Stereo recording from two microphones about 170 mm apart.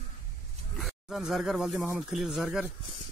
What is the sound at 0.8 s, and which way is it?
Speech, centre (ahead or behind).